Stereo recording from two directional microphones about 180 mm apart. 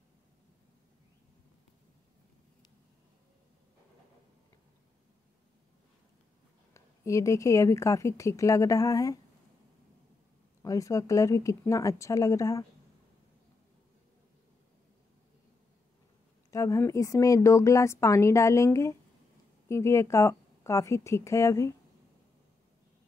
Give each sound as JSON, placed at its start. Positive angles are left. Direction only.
{"t": 6.7, "sound": "a woman's voice", "side_deg": 15}
{"t": 10.6, "sound": "a woman's voice", "side_deg": 20}
{"t": 16.4, "sound": "a woman's voice", "side_deg": 15}